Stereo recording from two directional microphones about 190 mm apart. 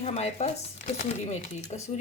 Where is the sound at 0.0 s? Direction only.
35° left (ahead or behind).